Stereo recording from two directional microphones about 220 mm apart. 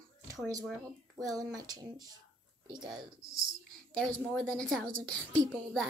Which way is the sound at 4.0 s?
5° left (ahead or behind).